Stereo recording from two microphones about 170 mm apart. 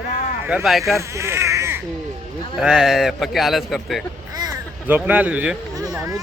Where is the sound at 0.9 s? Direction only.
15° right (ahead or behind).